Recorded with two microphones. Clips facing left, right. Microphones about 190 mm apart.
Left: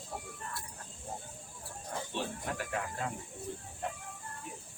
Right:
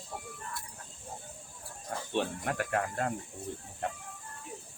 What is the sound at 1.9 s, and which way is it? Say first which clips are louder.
Speech: right 5 dB; 70° right (ahead or behind).